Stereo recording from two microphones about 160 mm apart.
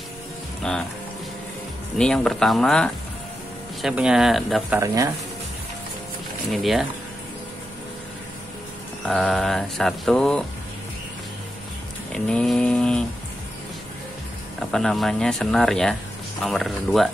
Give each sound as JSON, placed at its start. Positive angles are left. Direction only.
{"t": 0.6, "sound": "speech", "side_deg": 5}
{"t": 2.0, "sound": "speech", "side_deg": 5}
{"t": 4.7, "sound": "speech", "side_deg": -20}
{"t": 6.5, "sound": "speech", "side_deg": 0}
{"t": 9.0, "sound": "speech", "side_deg": 5}
{"t": 12.1, "sound": "a sound", "side_deg": 5}
{"t": 14.7, "sound": "speech", "side_deg": 0}